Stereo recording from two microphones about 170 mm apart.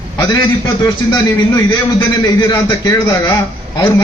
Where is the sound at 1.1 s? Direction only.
20° left (ahead or behind).